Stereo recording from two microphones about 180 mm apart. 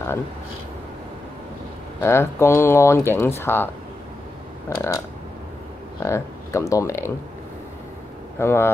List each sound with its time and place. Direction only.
2.0 s speech: 15° left (ahead or behind)
8.4 s speech: 15° left (ahead or behind)